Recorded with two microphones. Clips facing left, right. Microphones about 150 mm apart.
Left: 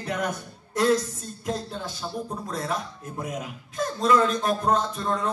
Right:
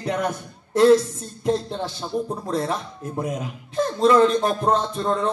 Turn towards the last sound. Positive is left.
turn(degrees=-30)  # may be behind; listen again after turning